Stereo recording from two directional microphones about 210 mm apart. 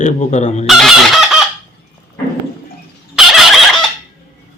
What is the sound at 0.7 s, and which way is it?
Chicken, centre (ahead or behind).